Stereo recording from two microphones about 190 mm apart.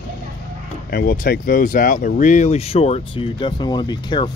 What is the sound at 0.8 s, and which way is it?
Speech, 50° left (ahead or behind).